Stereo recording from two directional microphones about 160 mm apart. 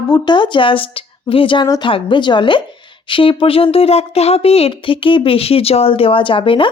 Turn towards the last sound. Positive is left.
turn(degrees=35)  # may be behind; listen again after turning